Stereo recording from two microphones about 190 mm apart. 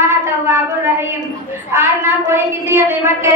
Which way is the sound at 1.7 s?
15° right (ahead or behind).